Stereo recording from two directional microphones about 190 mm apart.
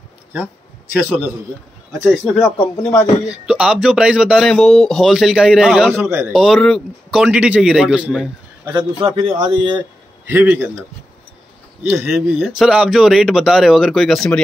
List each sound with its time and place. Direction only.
1.9 s speech: centre (ahead or behind)
2.4 s speech: 10° left (ahead or behind)
3.3 s speech: 5° right (ahead or behind)
5.9 s a man's voice: 15° right (ahead or behind)
6.3 s speech: centre (ahead or behind)
8.6 s a man's voice: 25° right (ahead or behind)
10.2 s a man's voice: 10° right (ahead or behind)
11.9 s speech: 5° right (ahead or behind)